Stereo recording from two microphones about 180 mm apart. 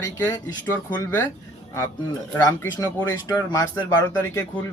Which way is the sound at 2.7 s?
15° left (ahead or behind).